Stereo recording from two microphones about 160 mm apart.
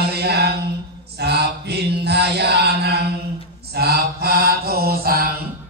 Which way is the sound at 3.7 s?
80° right.